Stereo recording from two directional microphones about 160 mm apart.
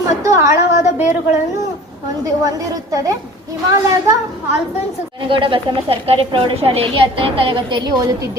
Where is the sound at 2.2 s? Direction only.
20° right (ahead or behind).